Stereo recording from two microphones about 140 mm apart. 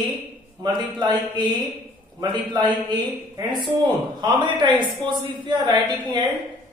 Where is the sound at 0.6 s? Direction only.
30° right (ahead or behind).